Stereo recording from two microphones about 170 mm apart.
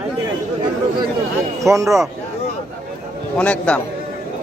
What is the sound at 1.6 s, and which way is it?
Speech, 20° right (ahead or behind).